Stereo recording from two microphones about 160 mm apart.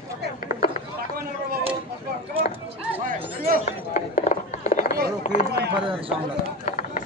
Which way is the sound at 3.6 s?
45° left (ahead or behind).